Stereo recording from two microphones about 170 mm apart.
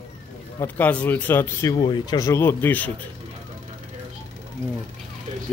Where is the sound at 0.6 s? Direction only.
10° left (ahead or behind).